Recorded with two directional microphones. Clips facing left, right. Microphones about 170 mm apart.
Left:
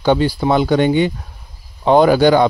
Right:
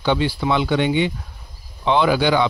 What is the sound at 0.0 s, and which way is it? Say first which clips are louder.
Speech: left 5 dB; 45° left (ahead or behind).